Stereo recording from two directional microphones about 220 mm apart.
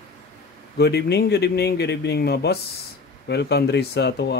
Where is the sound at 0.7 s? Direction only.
50° left (ahead or behind).